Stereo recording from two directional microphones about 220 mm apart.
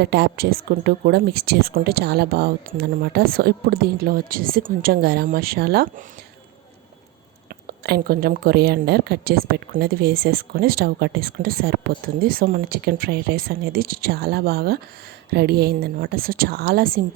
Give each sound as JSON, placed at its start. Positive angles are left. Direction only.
{"t": 0.0, "sound": "speech", "side_deg": -50}
{"t": 7.7, "sound": "speech", "side_deg": -45}